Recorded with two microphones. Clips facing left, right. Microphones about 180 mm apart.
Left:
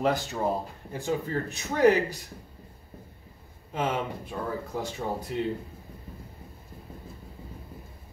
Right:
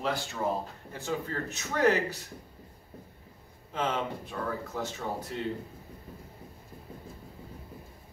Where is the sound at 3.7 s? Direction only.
15° left (ahead or behind).